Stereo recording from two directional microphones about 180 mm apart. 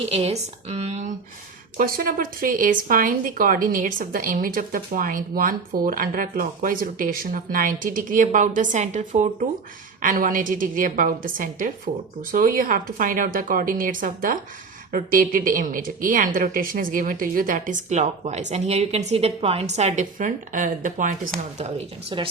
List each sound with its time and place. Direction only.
0.0 s speech: 35° right (ahead or behind)
1.8 s speech: 55° right (ahead or behind)
21.6 s speech: 35° right (ahead or behind)